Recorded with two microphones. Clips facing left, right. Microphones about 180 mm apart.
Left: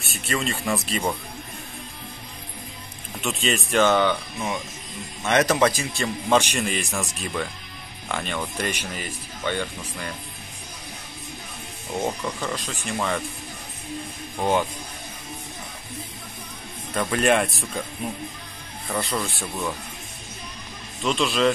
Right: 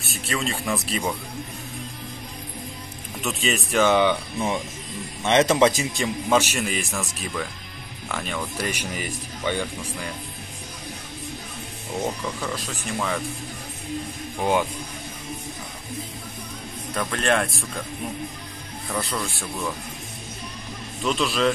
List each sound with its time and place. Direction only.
0.0 s speech: centre (ahead or behind)
3.2 s speech: 5° right (ahead or behind); by 6.0 s 20° right (ahead or behind)
6.2 s speech: 5° right (ahead or behind)
12.4 s speech: 5° right (ahead or behind)
14.4 s speech: 10° right (ahead or behind)
16.9 s speech: 5° left (ahead or behind)
18.9 s speech: centre (ahead or behind)
21.0 s speech: centre (ahead or behind)